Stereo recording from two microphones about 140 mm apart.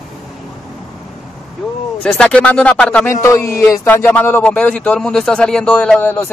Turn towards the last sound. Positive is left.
turn(degrees=15)  # may be behind; listen again after turning